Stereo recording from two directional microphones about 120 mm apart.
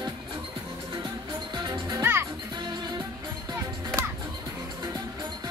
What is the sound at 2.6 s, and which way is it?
Music, 35° right (ahead or behind).